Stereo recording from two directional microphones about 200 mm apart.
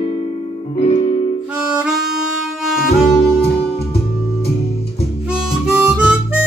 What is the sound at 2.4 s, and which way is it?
Music, centre (ahead or behind).